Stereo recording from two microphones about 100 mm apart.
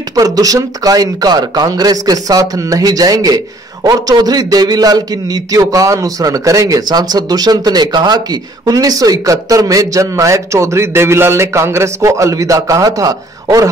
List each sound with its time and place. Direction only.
0.1 s speech: 35° right (ahead or behind)